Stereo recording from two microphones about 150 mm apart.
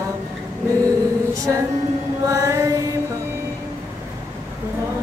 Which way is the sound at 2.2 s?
20° right (ahead or behind).